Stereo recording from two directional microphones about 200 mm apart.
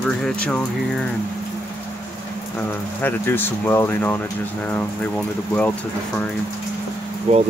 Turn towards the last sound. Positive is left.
turn(degrees=-35)  # may be behind; listen again after turning